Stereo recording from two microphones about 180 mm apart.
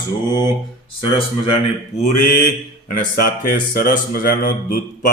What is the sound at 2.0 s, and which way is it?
Speech, 45° left (ahead or behind).